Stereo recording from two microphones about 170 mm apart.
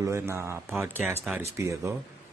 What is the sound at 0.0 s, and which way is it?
Speech, 15° right (ahead or behind).